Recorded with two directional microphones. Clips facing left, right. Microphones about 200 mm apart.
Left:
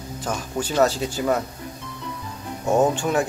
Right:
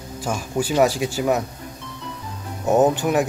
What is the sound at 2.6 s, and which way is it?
Speech, 20° right (ahead or behind).